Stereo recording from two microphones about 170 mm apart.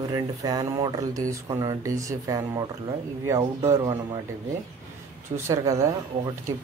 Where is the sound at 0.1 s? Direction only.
25° right (ahead or behind).